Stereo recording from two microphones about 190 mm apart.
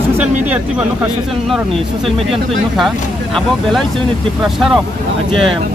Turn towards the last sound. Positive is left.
turn(degrees=0)  # may be behind; listen again after turning